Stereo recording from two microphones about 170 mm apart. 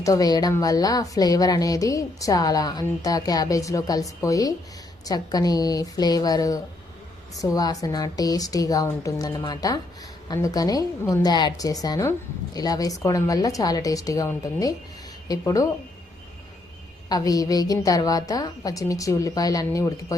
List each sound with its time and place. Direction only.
0.0 s speech: 20° left (ahead or behind)
17.1 s speech: 20° left (ahead or behind)